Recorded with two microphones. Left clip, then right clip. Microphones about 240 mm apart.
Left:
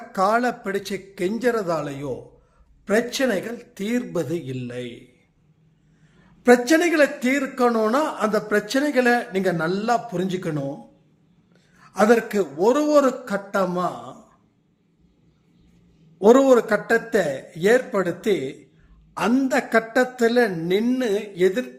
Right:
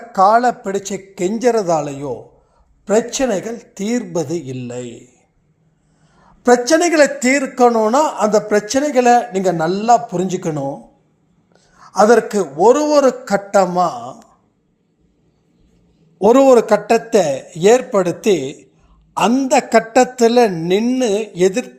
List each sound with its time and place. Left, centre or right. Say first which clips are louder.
0.3 s a man's voice: right 8 dB; centre
6.4 s a man's voice: right 4 dB; centre
12.1 s a man's voice: right 7 dB; centre
16.1 s a man's voice: right 5 dB; right